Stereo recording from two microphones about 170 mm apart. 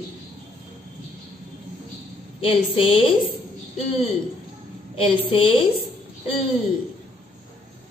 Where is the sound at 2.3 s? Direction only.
30° left (ahead or behind).